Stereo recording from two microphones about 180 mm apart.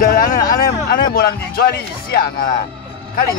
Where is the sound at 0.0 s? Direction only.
55° left (ahead or behind).